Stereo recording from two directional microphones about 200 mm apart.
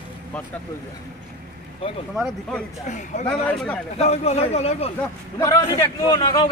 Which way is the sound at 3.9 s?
30° left (ahead or behind).